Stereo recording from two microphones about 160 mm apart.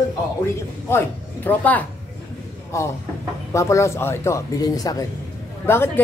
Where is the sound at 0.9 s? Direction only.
15° left (ahead or behind).